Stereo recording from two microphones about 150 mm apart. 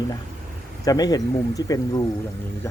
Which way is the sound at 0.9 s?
25° left (ahead or behind).